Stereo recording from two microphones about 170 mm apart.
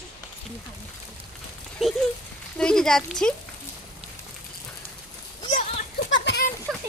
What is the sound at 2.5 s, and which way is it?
Speech, 5° left (ahead or behind).